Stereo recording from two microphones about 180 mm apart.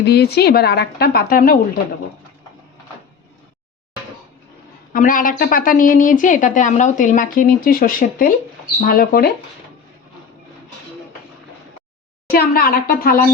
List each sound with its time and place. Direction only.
0.0 s a woman's voice: 65° left (ahead or behind)
4.9 s a woman's voice: 50° left (ahead or behind)
12.3 s a woman's voice: 55° left (ahead or behind)